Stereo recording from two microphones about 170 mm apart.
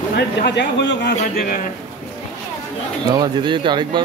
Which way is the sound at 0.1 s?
80° left.